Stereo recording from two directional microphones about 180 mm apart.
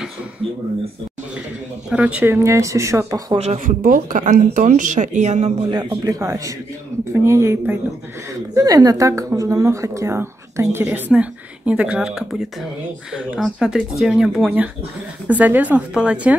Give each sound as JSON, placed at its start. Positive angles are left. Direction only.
{"t": 1.9, "sound": "a woman's voice", "side_deg": -5}
{"t": 3.3, "sound": "speech", "side_deg": -40}
{"t": 5.7, "sound": "a man's voice", "side_deg": -25}